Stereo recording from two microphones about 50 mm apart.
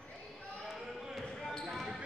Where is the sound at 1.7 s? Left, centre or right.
Centre.